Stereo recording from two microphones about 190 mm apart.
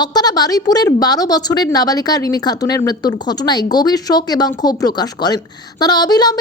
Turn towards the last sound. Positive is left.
turn(degrees=20)  # may be behind; listen again after turning